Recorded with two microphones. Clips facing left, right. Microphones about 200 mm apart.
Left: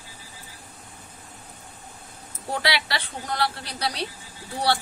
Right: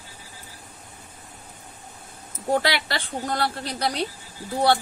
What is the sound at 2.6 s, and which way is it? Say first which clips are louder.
A woman's voice: left 2 dB; 50° right (ahead or behind).